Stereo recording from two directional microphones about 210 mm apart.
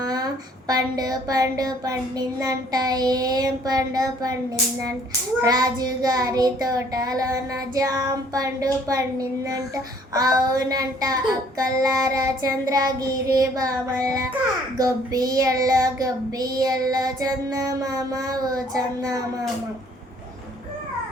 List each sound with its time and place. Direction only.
0.0 s a sound: 20° right (ahead or behind)
0.7 s child singing: 20° right (ahead or behind)
5.4 s child singing: 15° right (ahead or behind)